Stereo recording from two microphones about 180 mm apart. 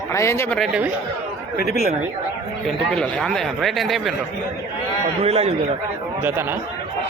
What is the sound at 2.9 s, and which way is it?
Speech, 5° left (ahead or behind).